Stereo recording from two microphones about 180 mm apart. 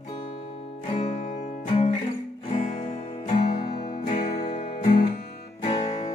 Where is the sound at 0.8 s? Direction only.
35° left (ahead or behind).